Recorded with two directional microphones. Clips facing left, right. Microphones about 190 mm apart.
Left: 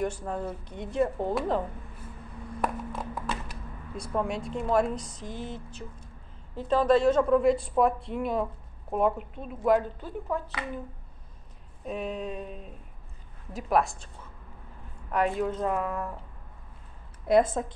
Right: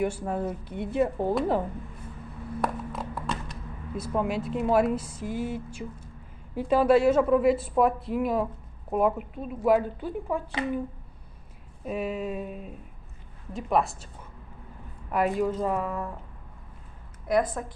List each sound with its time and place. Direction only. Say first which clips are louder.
0.0 s speech: right 3 dB; 10° right (ahead or behind)
2.6 s a sound: even; centre (ahead or behind)
3.9 s a woman's voice: right 2 dB; 5° right (ahead or behind)
11.8 s a woman's voice: right 3 dB; 5° right (ahead or behind)
15.0 s a woman's voice: right 2 dB; 5° right (ahead or behind)
17.3 s a woman's voice: left 3 dB; 25° left (ahead or behind)